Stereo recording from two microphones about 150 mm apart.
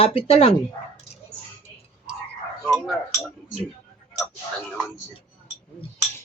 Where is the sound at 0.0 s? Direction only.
40° left (ahead or behind).